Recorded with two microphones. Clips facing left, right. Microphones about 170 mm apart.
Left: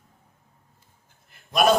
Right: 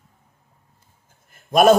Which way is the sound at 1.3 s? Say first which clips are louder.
Right 6 dB; 50° right (ahead or behind).